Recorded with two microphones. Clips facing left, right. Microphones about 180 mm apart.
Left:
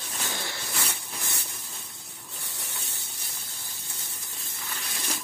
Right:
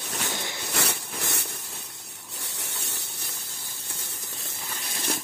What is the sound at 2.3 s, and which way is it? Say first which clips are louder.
Spray: right 3 dB; 75° right (ahead or behind).